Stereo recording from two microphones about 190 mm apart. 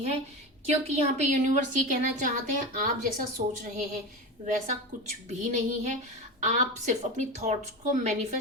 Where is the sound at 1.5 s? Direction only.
45° right (ahead or behind).